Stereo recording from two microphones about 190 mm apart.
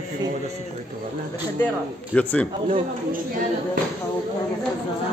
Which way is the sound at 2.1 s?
10° left (ahead or behind).